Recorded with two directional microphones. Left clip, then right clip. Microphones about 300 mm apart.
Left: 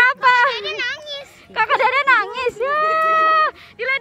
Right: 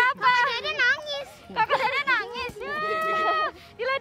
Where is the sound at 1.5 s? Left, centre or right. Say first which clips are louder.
Left 7 dB; centre.